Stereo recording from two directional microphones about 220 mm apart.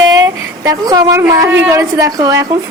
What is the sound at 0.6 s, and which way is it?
A woman's voice, 15° right (ahead or behind).